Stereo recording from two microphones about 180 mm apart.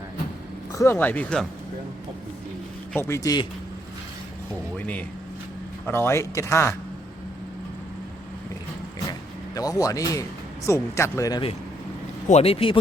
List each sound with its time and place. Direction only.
0.7 s speech: 15° left (ahead or behind)
2.9 s speech: 15° left (ahead or behind)
4.8 s speech: 10° left (ahead or behind)
9.6 s speech: 20° left (ahead or behind)